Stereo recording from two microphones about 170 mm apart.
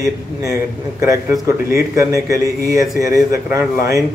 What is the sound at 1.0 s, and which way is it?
A man's voice, 15° right (ahead or behind).